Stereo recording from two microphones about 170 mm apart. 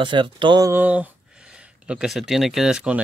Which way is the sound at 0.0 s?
30° right (ahead or behind).